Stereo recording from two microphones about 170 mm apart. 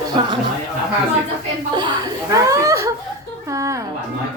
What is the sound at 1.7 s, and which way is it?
Speech, 25° right (ahead or behind).